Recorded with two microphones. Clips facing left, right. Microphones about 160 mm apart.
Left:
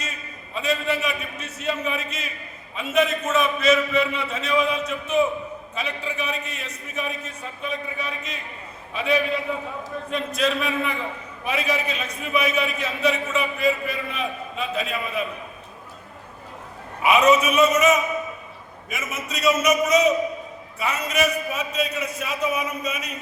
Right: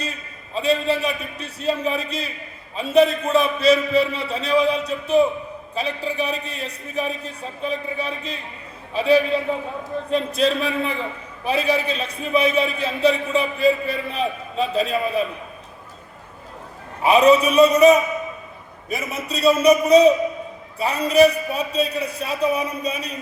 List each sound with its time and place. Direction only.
0.5 s a man's voice: 30° right (ahead or behind)
17.0 s a man's voice: 35° right (ahead or behind)